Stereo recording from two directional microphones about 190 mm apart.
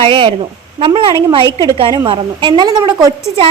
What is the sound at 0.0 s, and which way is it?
A woman's voice, 30° right (ahead or behind).